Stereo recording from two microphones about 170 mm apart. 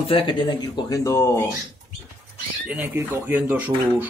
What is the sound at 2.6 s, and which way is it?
Speech, 10° right (ahead or behind).